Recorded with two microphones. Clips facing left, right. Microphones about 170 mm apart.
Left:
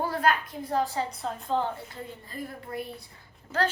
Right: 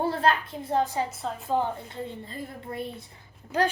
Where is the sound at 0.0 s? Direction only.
30° right (ahead or behind).